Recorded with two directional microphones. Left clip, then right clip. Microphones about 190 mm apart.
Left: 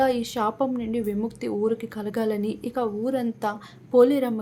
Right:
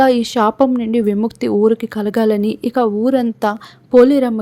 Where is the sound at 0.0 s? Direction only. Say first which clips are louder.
Right 10 dB; 45° right (ahead or behind).